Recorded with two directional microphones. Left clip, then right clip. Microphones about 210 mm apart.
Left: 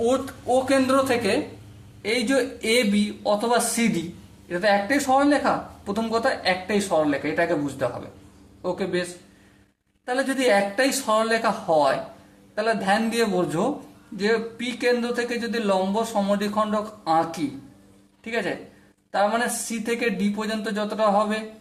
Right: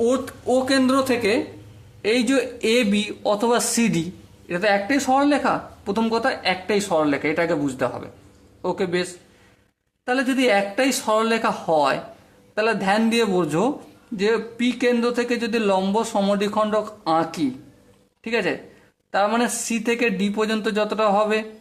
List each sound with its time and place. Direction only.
0.0 s speech: 25° right (ahead or behind)
0.5 s speech: 40° right (ahead or behind)
10.1 s speech: 35° right (ahead or behind)
18.3 s speech: 35° right (ahead or behind)